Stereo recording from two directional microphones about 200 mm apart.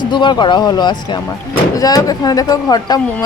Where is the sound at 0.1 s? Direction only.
25° left (ahead or behind).